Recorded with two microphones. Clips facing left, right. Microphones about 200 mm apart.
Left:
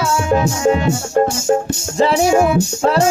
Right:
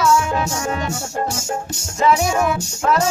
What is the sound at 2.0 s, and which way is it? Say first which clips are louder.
Music: left 4 dB; 30° left (ahead or behind).